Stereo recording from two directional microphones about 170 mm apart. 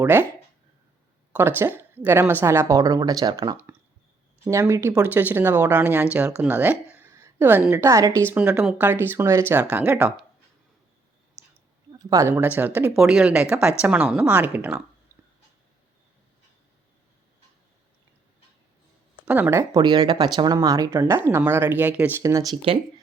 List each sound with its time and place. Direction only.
0.0 s a woman's voice: 10° right (ahead or behind)
1.3 s a woman's voice: 15° right (ahead or behind)
11.9 s a sound: 20° right (ahead or behind)
12.3 s a woman's voice: 10° right (ahead or behind)
19.2 s a woman's voice: 10° right (ahead or behind)
22.5 s speech: 35° right (ahead or behind)